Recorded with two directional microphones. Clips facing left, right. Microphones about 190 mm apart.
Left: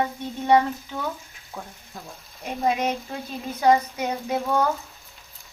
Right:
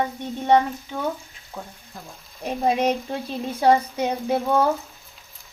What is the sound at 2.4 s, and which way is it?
Stir, 30° right (ahead or behind).